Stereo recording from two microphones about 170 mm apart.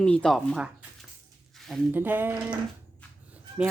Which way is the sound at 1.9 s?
10° right (ahead or behind).